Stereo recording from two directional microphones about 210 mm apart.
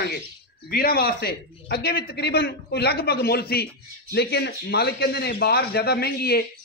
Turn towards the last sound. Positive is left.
turn(degrees=50)  # may be behind; listen again after turning